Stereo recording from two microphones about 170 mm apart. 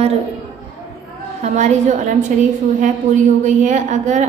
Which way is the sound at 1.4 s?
45° right (ahead or behind).